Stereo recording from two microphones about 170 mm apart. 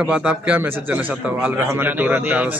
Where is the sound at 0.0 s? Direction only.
5° right (ahead or behind).